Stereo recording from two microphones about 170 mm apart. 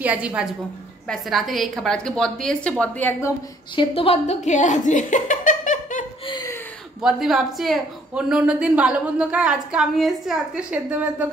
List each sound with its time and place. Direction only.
0.0 s a woman's voice: 10° right (ahead or behind); by 3.3 s 15° left (ahead or behind)
3.7 s a woman's voice: 35° left (ahead or behind); by 6.0 s 50° left (ahead or behind)
6.2 s chuckle: 25° left (ahead or behind)
7.0 s a woman's voice: 5° right (ahead or behind)